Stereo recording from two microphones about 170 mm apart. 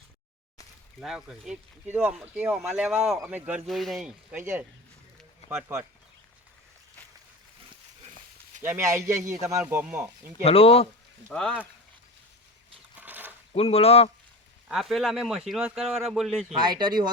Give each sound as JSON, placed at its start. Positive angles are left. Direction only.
{"t": 0.9, "sound": "speech", "side_deg": -5}
{"t": 8.6, "sound": "speech", "side_deg": -15}
{"t": 10.4, "sound": "speech", "side_deg": 35}
{"t": 11.3, "sound": "speech", "side_deg": 5}
{"t": 13.0, "sound": "a sound", "side_deg": -10}
{"t": 13.5, "sound": "speech", "side_deg": 35}
{"t": 14.7, "sound": "speech", "side_deg": 0}
{"t": 16.5, "sound": "speech", "side_deg": -25}